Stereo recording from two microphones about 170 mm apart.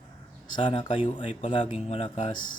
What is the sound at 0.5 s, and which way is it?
Speech, 30° left (ahead or behind).